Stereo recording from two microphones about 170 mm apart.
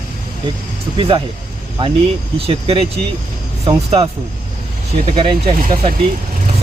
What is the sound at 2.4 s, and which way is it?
Speech, 35° right (ahead or behind).